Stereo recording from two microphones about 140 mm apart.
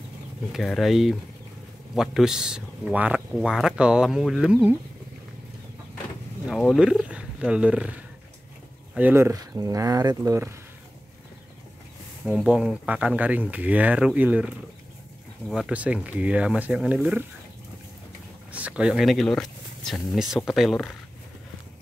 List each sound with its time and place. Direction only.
0.5 s speech: centre (ahead or behind)
6.5 s speech: centre (ahead or behind)
8.9 s speech: 15° right (ahead or behind)
12.3 s speech: 5° right (ahead or behind)
15.5 s speech: 10° right (ahead or behind)
18.5 s speech: 10° right (ahead or behind)